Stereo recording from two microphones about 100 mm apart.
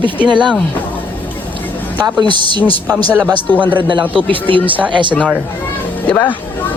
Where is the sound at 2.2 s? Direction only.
50° right (ahead or behind).